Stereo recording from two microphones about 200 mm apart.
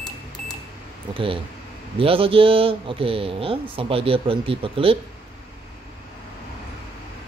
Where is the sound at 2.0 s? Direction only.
25° right (ahead or behind).